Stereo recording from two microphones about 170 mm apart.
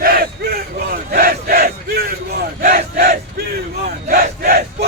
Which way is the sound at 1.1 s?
60° right (ahead or behind).